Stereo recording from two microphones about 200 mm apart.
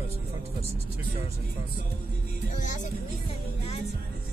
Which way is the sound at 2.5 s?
40° left (ahead or behind).